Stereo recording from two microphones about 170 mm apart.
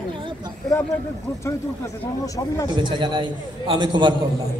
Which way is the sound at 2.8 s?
25° right (ahead or behind).